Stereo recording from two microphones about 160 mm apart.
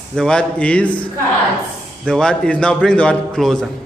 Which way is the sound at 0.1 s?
5° left (ahead or behind).